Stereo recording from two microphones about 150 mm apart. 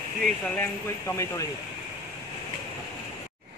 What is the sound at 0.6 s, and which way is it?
Speech, 20° left (ahead or behind).